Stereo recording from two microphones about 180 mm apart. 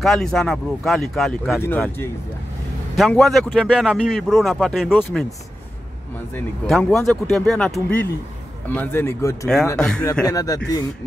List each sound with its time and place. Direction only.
0.0 s a man's voice: centre (ahead or behind)
1.6 s speech: 10° left (ahead or behind)
3.0 s a man's voice: centre (ahead or behind)
6.7 s a man's voice: 10° left (ahead or behind)
9.8 s a man's voice: 5° left (ahead or behind)
10.2 s speech: 20° left (ahead or behind)